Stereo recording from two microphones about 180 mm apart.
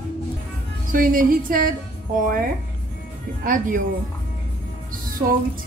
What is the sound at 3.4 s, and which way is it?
Speech, 50° right (ahead or behind).